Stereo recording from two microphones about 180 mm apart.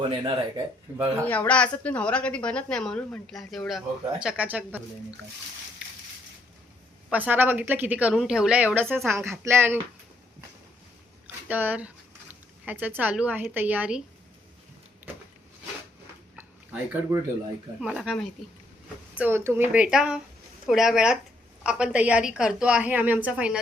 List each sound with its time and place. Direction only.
0.0 s speech: 25° right (ahead or behind)
1.2 s a woman's voice: 10° left (ahead or behind); by 4.8 s 10° right (ahead or behind)
5.8 s crushing: 5° right (ahead or behind)
7.1 s a woman's voice: 10° right (ahead or behind)
11.4 s a woman's voice: 10° right (ahead or behind)
16.3 s a sound: 10° right (ahead or behind)
17.7 s a woman's voice: 5° right (ahead or behind)